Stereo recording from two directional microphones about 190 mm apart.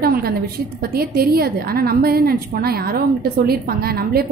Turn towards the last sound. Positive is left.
turn(degrees=-55)  # may be behind; listen again after turning